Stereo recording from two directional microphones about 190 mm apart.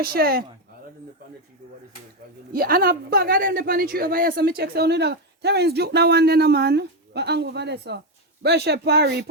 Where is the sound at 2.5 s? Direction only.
50° right (ahead or behind).